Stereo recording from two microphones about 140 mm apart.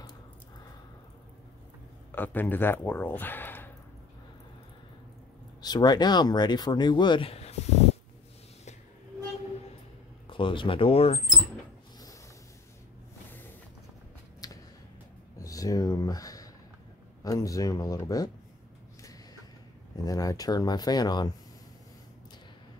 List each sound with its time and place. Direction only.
2.1 s speech: 15° left (ahead or behind)
5.6 s speech: 30° left (ahead or behind); by 8.0 s 50° left (ahead or behind)
10.2 s speech: 40° left (ahead or behind)
14.4 s a sound: 25° left (ahead or behind)
15.3 s speech: 25° left (ahead or behind)
20.1 s speech: 25° left (ahead or behind)